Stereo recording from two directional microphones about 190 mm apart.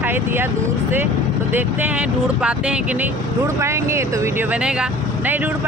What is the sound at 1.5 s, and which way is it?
Speech, 10° right (ahead or behind).